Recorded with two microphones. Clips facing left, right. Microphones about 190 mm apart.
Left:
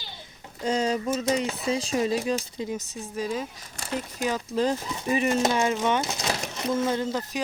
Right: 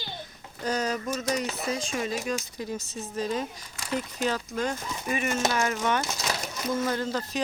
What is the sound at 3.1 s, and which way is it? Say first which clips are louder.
Speech: even; 5° left (ahead or behind).